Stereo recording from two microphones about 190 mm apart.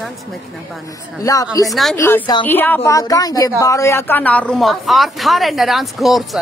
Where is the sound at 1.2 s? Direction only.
20° left (ahead or behind).